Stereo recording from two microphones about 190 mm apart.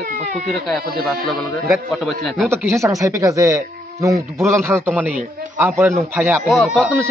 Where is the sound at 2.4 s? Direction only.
15° right (ahead or behind).